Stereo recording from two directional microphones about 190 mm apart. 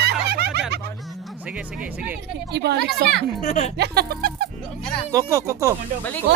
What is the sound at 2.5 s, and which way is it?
Speech, 60° right (ahead or behind).